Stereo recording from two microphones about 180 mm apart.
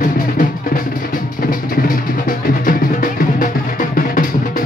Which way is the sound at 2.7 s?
50° left (ahead or behind).